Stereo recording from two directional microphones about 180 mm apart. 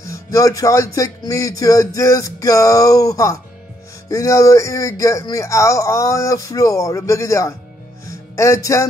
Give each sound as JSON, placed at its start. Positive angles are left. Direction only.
{"t": 0.0, "sound": "a man's voice", "side_deg": 20}